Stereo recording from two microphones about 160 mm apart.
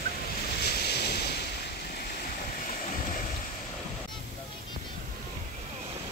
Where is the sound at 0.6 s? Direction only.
90° left.